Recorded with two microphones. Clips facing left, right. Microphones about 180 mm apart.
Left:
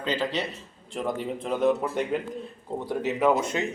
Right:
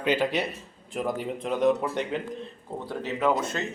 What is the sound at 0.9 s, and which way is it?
Speech, centre (ahead or behind).